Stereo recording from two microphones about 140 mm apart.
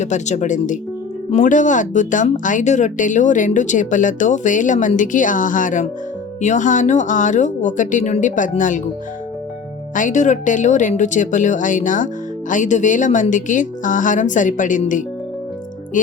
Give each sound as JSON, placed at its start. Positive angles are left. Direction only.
{"t": 0.0, "sound": "speech", "side_deg": 55}
{"t": 9.9, "sound": "speech", "side_deg": 65}